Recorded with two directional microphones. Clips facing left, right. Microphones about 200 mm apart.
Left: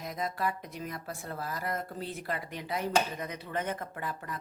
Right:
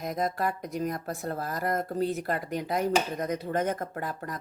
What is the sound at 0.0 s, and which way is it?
Speech, 45° right (ahead or behind).